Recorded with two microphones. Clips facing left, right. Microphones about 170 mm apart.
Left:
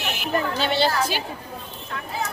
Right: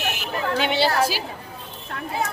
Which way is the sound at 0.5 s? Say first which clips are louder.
Right 4 dB; 15° right (ahead or behind).